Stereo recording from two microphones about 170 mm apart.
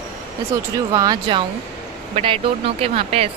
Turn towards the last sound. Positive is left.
turn(degrees=-35)  # may be behind; listen again after turning